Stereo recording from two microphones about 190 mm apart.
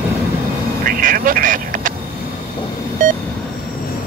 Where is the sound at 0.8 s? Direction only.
50° right (ahead or behind).